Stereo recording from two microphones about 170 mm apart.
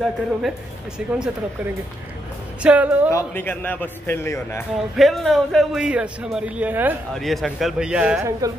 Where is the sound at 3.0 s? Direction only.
15° left (ahead or behind).